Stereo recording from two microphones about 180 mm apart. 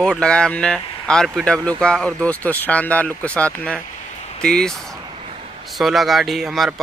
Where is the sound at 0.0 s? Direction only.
5° left (ahead or behind).